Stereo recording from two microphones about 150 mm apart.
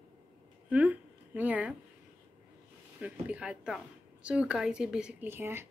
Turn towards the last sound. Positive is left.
turn(degrees=-15)  # may be behind; listen again after turning